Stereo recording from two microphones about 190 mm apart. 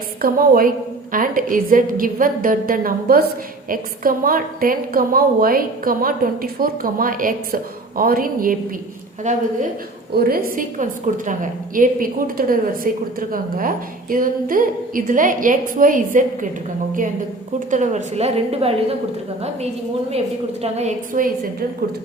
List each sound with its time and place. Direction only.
0.2 s a woman's voice: 50° right (ahead or behind)
10.2 s a woman's voice: 50° right (ahead or behind)
17.7 s a woman's voice: 40° right (ahead or behind)
20.6 s a woman's voice: 35° right (ahead or behind)